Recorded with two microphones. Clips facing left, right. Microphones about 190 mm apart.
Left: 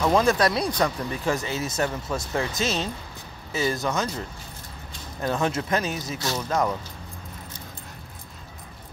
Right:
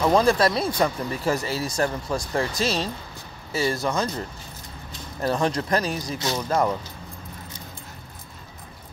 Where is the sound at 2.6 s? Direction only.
35° right (ahead or behind).